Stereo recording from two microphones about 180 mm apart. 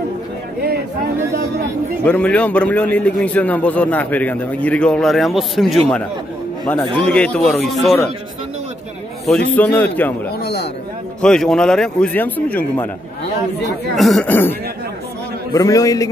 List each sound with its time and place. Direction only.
2.0 s a man's voice: 5° left (ahead or behind)
7.1 s a man's voice: 5° left (ahead or behind)
9.2 s a man's voice: 5° left (ahead or behind)
10.4 s speech: 65° left (ahead or behind)
11.1 s a man's voice: 5° left (ahead or behind)
13.9 s a man's voice: centre (ahead or behind)
15.5 s a man's voice: 20° left (ahead or behind)